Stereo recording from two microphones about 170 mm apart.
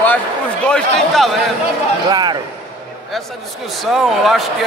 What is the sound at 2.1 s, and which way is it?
Speech, 25° right (ahead or behind).